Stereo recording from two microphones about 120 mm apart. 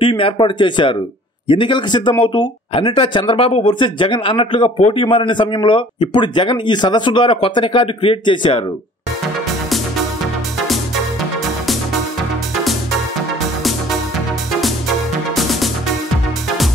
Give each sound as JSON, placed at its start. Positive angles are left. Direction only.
{"t": 0.0, "sound": "a man's voice", "side_deg": 45}